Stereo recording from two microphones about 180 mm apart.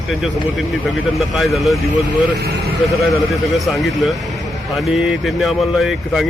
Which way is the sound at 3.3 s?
Centre (ahead or behind).